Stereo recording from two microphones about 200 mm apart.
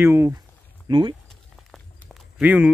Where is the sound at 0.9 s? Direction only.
25° right (ahead or behind).